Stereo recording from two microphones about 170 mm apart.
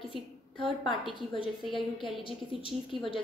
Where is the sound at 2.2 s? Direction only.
30° left (ahead or behind).